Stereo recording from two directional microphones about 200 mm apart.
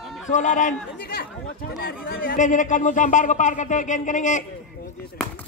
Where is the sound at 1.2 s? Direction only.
50° left (ahead or behind).